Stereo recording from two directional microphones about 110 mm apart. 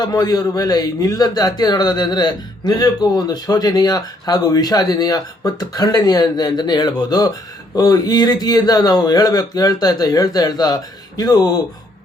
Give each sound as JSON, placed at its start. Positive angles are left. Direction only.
{"t": 0.0, "sound": "a man's voice", "side_deg": 35}